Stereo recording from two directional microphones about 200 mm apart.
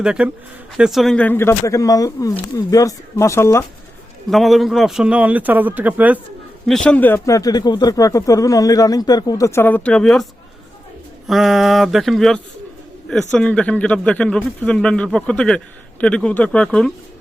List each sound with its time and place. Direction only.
0.0 s speech: 5° right (ahead or behind); by 3.6 s 15° left (ahead or behind)
4.3 s a man's voice: centre (ahead or behind)
6.7 s speech: 5° left (ahead or behind)
11.3 s speech: centre (ahead or behind)